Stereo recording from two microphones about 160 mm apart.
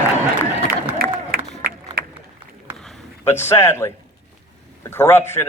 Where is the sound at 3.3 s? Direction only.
15° left (ahead or behind).